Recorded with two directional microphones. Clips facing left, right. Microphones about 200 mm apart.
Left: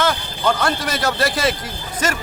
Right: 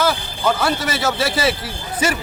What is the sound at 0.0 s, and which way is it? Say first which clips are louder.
A man's voice: right 1 dB; 5° right (ahead or behind).